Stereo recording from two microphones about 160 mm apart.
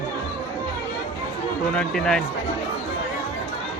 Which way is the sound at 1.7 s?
5° left (ahead or behind).